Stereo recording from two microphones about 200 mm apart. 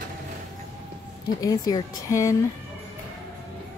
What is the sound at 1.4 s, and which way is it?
Speech, 15° left (ahead or behind).